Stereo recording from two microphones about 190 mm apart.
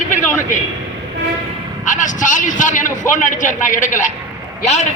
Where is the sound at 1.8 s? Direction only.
40° left (ahead or behind).